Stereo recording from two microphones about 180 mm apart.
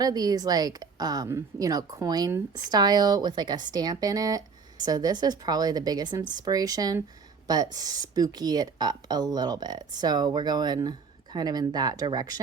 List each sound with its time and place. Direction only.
0.0 s speech: 20° right (ahead or behind)